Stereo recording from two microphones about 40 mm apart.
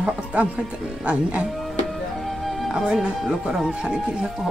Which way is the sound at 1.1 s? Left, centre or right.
Right.